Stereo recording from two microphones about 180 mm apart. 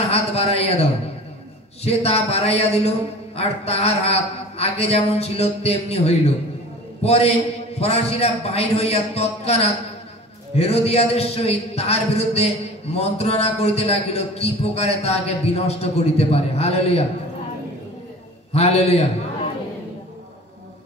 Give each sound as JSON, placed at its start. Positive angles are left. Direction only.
{"t": 0.1, "sound": "a sound", "side_deg": 35}
{"t": 1.9, "sound": "a man's voice", "side_deg": 35}
{"t": 18.5, "sound": "a man's voice", "side_deg": 35}